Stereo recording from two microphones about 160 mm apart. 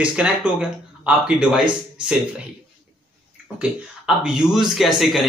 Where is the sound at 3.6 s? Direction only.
5° right (ahead or behind).